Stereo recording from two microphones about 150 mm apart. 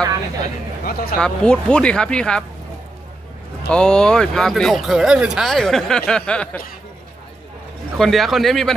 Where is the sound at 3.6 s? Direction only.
5° left (ahead or behind).